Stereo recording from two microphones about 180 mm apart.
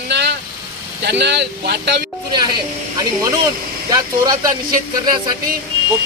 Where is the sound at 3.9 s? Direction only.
20° right (ahead or behind).